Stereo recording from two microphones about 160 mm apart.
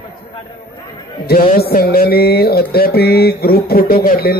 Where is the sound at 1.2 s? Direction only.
70° left (ahead or behind).